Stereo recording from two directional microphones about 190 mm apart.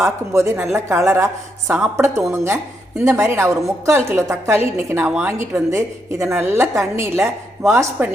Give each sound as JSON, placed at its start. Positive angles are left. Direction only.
{"t": 0.0, "sound": "a woman's voice", "side_deg": -15}